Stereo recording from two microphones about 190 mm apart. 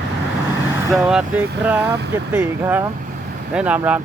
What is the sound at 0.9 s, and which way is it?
Speech, 5° right (ahead or behind).